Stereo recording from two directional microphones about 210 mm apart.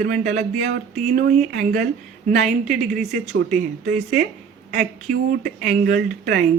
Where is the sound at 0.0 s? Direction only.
45° right (ahead or behind).